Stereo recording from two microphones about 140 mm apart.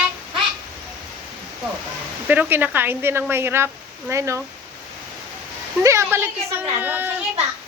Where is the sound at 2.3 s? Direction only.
15° right (ahead or behind).